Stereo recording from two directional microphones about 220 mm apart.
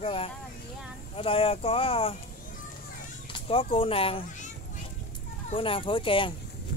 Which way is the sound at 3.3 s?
25° left (ahead or behind).